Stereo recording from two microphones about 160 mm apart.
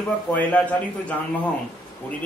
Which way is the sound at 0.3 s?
10° left (ahead or behind).